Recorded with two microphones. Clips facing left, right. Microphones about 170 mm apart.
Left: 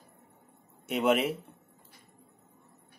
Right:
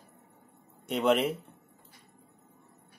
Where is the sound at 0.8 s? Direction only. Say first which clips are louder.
Even; 5° left (ahead or behind).